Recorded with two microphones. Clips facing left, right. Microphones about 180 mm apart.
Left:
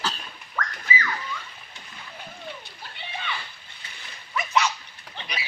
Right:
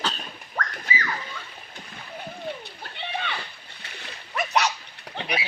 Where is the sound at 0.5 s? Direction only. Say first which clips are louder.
Left 1 dB; 40° right (ahead or behind).